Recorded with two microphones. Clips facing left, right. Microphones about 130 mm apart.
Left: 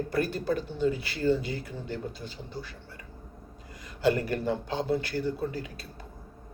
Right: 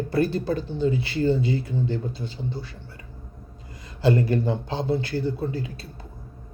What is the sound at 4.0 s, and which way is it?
Speech, 30° right (ahead or behind).